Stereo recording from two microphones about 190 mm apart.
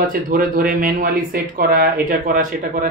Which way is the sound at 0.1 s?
50° right (ahead or behind).